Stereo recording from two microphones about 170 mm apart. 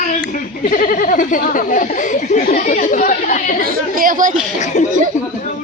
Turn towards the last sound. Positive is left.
turn(degrees=45)  # may be behind; listen again after turning